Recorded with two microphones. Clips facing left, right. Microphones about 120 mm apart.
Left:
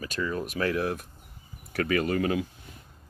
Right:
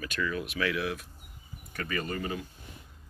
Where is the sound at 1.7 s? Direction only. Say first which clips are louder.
Left 8 dB; 65° left (ahead or behind); by 2.5 s 90° left.